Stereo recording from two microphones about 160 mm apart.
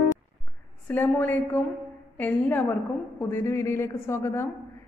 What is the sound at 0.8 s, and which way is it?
A woman's voice, 10° left (ahead or behind).